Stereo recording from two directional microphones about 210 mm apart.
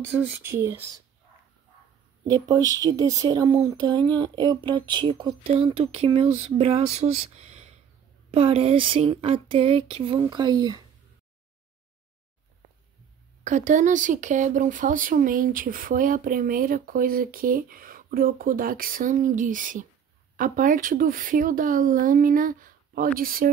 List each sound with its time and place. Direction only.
0.2 s speech: 10° right (ahead or behind)
2.2 s speech: 20° right (ahead or behind)
13.4 s speech: 35° right (ahead or behind)